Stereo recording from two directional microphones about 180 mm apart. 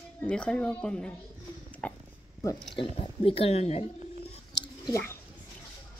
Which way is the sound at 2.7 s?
30° left (ahead or behind).